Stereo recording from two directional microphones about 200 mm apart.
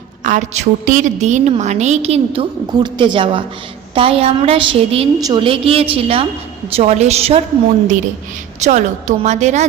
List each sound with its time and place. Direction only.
0.3 s a woman's voice: 35° right (ahead or behind)
8.6 s a woman's voice: 35° right (ahead or behind)